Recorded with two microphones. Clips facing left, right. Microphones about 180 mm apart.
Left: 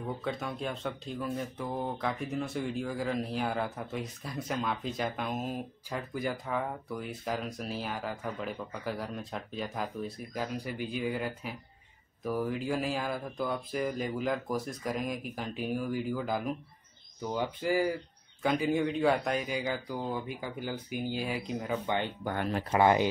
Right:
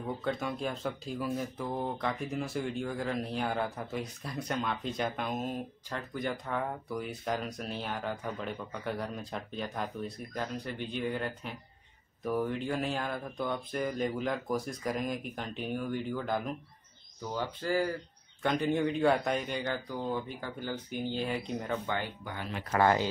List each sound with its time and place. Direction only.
0.2 s speech: centre (ahead or behind)
21.8 s speech: 20° left (ahead or behind)
22.2 s speech: 50° left (ahead or behind)
22.7 s speech: 15° left (ahead or behind)